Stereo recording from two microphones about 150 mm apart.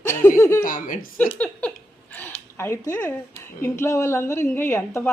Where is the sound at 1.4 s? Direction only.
10° left (ahead or behind).